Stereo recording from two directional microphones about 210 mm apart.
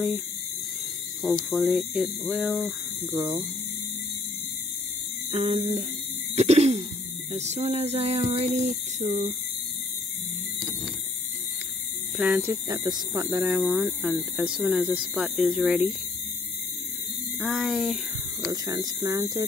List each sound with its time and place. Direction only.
1.5 s speech: centre (ahead or behind)
3.1 s speech: 20° right (ahead or behind)
5.3 s speech: 30° right (ahead or behind)
12.2 s speech: 10° right (ahead or behind)
17.4 s speech: 5° right (ahead or behind)
18.5 s speech: 20° right (ahead or behind)